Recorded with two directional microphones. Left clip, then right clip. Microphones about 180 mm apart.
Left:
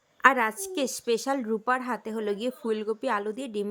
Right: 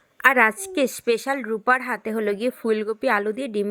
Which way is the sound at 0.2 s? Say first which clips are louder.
Right 5 dB; 25° right (ahead or behind).